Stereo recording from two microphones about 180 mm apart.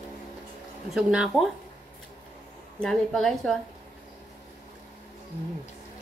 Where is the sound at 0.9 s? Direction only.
Centre (ahead or behind).